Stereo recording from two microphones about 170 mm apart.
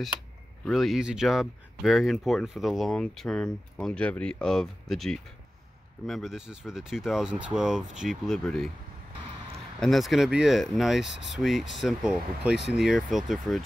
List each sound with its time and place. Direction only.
0.7 s speech: centre (ahead or behind)
9.8 s speech: centre (ahead or behind)
11.1 s speech: 90° left
11.3 s speech: centre (ahead or behind)